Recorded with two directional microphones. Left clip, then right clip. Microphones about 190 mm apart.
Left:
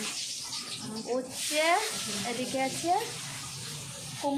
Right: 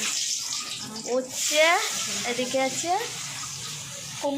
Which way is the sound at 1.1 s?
20° right (ahead or behind).